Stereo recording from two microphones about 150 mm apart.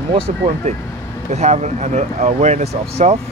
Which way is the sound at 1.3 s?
50° right (ahead or behind).